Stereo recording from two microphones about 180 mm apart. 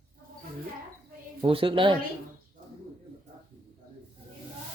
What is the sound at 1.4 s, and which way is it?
Speech, 30° right (ahead or behind).